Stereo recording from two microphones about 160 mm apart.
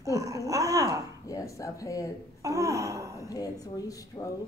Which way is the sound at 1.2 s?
20° left (ahead or behind).